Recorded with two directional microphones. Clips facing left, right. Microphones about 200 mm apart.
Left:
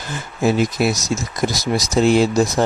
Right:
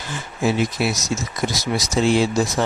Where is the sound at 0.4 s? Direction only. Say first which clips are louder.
Left 3 dB; 45° left (ahead or behind).